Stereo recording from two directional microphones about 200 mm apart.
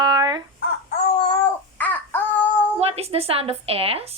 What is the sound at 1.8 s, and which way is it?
Babbling, 10° left (ahead or behind).